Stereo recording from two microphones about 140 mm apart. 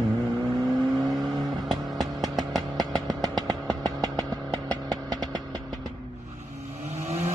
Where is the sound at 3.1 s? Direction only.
30° right (ahead or behind).